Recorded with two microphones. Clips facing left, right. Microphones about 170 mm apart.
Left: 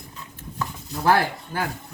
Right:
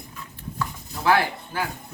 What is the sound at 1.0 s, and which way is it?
Speech, 50° left (ahead or behind).